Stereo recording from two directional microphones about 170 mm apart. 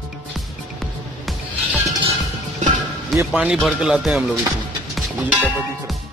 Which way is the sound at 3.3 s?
5° right (ahead or behind).